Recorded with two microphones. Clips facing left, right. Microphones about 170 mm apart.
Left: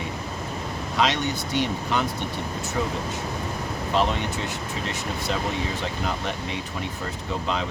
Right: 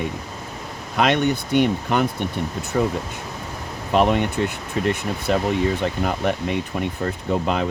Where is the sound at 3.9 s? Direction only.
55° right (ahead or behind).